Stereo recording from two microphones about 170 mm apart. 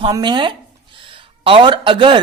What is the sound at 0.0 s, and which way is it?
A man's voice, 25° right (ahead or behind).